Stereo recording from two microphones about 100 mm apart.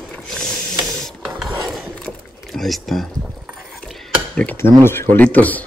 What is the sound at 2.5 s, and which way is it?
Speech, centre (ahead or behind).